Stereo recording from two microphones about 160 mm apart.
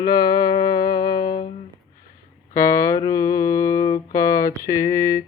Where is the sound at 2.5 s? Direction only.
20° left (ahead or behind).